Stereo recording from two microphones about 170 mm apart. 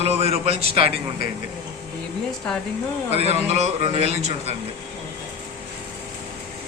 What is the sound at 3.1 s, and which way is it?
A man's voice, 40° right (ahead or behind).